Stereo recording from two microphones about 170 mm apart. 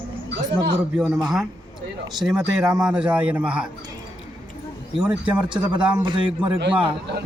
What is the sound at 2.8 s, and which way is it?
Chant, 5° right (ahead or behind).